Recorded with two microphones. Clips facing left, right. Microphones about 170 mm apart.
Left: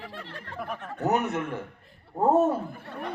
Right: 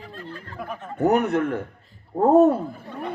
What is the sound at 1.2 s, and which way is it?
Speech, 60° right (ahead or behind).